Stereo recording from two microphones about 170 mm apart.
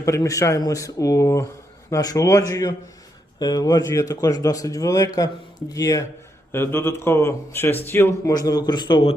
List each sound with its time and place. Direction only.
0.0 s speech: 20° left (ahead or behind)